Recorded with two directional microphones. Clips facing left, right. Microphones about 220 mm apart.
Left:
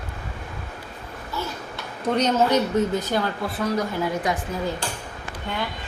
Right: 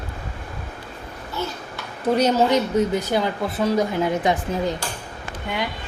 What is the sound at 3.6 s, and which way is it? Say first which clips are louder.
A woman's voice: right 4 dB; 25° right (ahead or behind).